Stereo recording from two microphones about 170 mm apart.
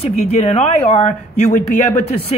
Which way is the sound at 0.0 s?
40° left (ahead or behind).